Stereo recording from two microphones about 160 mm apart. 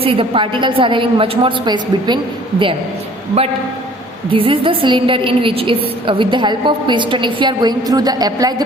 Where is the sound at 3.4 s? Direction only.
40° right (ahead or behind); by 8.6 s 25° right (ahead or behind).